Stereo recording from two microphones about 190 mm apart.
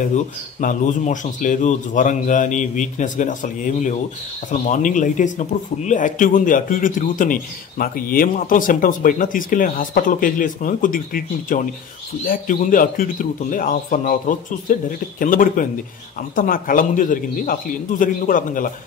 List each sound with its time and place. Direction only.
0.1 s speech: 40° left (ahead or behind)